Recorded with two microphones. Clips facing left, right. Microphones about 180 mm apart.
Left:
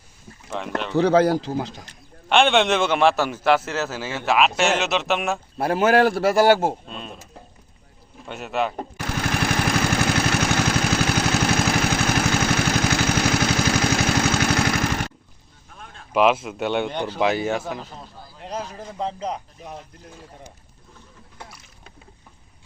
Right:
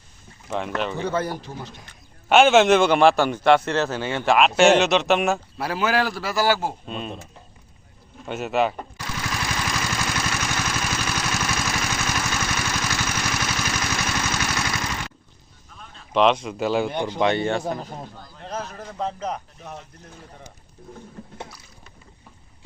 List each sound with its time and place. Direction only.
0.5 s a man's voice: centre (ahead or behind)
0.9 s a man's voice: 80° left
2.3 s a man's voice: 5° right (ahead or behind)
5.5 s a man's voice: 50° left (ahead or behind)
6.8 s a man's voice: centre (ahead or behind)
8.3 s a man's voice: centre (ahead or behind)
9.0 s lawn mower: 60° left (ahead or behind)
15.8 s a sound: 50° left (ahead or behind)
16.1 s a man's voice: 5° left (ahead or behind)
16.9 s speech: 10° right (ahead or behind)
17.2 s a man's voice: 5° left (ahead or behind)
17.7 s speech: 45° right (ahead or behind)
18.2 s speech: 10° left (ahead or behind)